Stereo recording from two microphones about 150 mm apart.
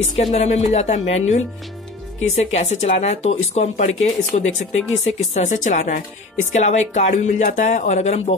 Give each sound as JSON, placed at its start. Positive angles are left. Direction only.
{"t": 0.2, "sound": "speech", "side_deg": 45}